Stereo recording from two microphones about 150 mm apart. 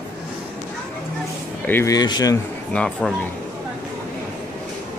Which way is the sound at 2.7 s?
5° left (ahead or behind).